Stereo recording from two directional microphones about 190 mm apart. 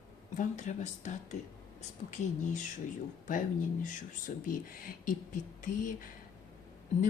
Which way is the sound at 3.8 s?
45° left (ahead or behind).